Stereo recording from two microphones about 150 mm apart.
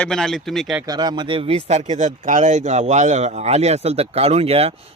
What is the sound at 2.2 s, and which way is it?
Speech, 55° right (ahead or behind).